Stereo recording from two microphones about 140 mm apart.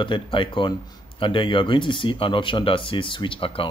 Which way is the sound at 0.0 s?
35° left (ahead or behind).